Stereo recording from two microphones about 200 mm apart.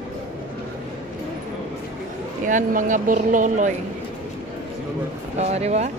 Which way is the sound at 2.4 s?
40° right (ahead or behind).